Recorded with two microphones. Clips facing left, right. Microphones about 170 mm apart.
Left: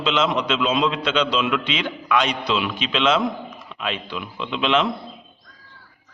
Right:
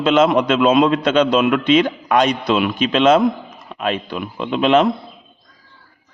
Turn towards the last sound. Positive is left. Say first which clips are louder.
# right 7 dB
turn(degrees=-45)  # may be behind; listen again after turning